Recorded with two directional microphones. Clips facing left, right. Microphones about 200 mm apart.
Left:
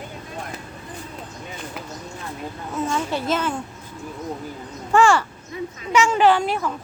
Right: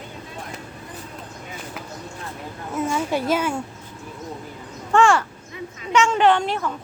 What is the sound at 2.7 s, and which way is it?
Speech, 10° right (ahead or behind).